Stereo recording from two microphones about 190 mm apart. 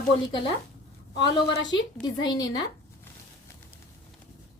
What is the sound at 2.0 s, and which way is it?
Speech, 20° left (ahead or behind).